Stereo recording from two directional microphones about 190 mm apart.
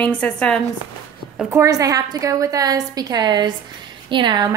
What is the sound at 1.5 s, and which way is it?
A woman's voice, 15° right (ahead or behind).